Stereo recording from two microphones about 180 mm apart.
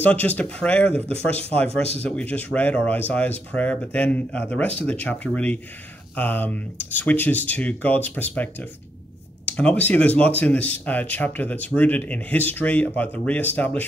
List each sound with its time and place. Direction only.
0.0 s speech: 10° left (ahead or behind)
0.9 s speech: 35° right (ahead or behind)
2.0 s speech: 5° left (ahead or behind)